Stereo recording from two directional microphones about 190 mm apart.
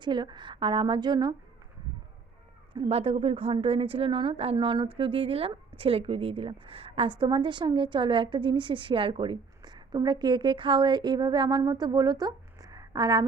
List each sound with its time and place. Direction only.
0.0 s a woman's voice: 25° right (ahead or behind)
2.7 s a woman's voice: 30° right (ahead or behind)